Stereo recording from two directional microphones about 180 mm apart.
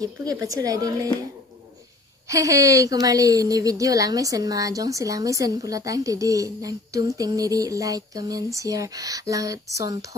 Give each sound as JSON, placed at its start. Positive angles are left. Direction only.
{"t": 0.0, "sound": "a woman's voice", "side_deg": -20}
{"t": 2.2, "sound": "a woman's voice", "side_deg": -15}